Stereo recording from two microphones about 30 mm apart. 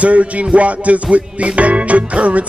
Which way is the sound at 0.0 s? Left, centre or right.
Right.